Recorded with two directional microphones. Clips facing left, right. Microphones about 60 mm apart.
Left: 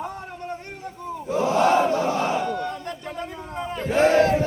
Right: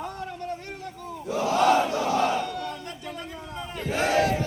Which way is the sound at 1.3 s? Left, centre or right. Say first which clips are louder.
Left 2 dB; left.